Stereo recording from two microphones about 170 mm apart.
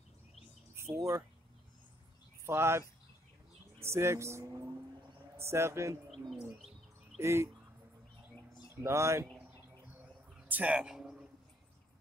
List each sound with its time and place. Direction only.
0.9 s speech: 15° right (ahead or behind)
2.4 s speech: 15° right (ahead or behind)
3.8 s speech: 15° right (ahead or behind)
6.3 s bird: centre (ahead or behind)
7.2 s speech: 15° right (ahead or behind)
8.7 s speech: 15° right (ahead or behind)
10.3 s a sound: 10° right (ahead or behind)